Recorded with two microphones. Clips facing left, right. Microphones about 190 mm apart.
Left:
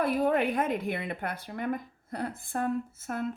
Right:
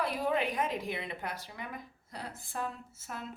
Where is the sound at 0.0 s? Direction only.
55° left (ahead or behind).